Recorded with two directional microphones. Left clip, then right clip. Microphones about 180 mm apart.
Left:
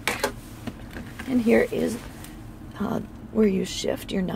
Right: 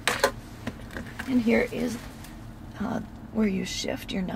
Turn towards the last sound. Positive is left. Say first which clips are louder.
# left 4 dB
turn(degrees=30)  # may be behind; listen again after turning